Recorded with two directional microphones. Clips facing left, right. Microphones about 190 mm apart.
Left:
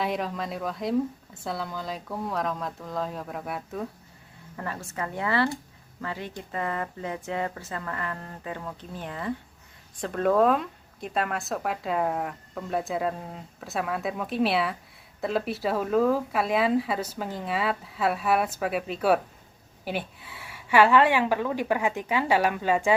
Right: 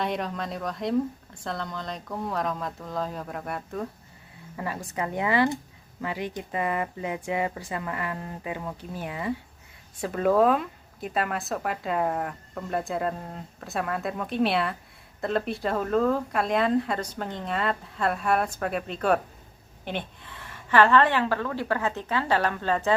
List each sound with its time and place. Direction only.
0.0 s a woman's voice: centre (ahead or behind)
4.5 s a woman's voice: 10° right (ahead or behind); by 23.0 s 10° left (ahead or behind)